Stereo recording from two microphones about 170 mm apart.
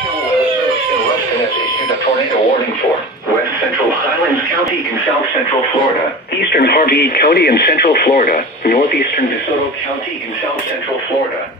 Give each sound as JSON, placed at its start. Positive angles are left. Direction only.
{"t": 6.5, "sound": "speech", "side_deg": 65}